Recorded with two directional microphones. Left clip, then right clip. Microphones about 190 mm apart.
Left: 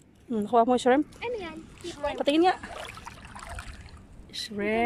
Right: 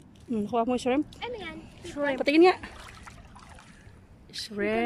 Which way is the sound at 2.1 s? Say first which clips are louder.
Right 2 dB; 10° right (ahead or behind).